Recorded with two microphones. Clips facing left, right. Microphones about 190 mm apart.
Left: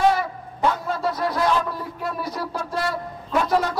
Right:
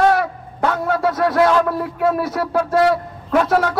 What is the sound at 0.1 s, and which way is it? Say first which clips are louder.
A man's voice: right 6 dB; 65° right (ahead or behind).